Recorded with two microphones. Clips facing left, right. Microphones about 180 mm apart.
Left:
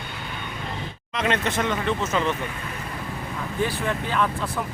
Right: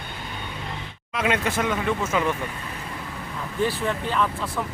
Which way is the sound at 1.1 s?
10° right (ahead or behind).